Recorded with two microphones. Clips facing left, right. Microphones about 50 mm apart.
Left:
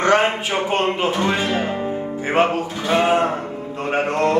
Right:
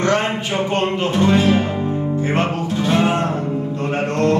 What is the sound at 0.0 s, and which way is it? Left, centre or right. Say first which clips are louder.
Speech: left 2 dB; left.